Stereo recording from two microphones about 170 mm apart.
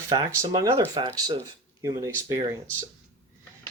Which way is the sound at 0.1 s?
20° right (ahead or behind).